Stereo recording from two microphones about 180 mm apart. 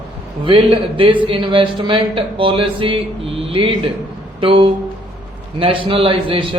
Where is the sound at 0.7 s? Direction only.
30° right (ahead or behind).